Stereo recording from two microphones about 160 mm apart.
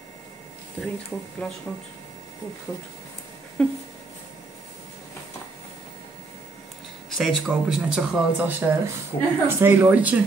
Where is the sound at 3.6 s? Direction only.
5° left (ahead or behind).